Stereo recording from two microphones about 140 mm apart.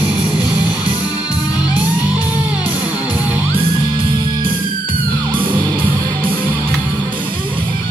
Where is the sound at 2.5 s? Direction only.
10° right (ahead or behind).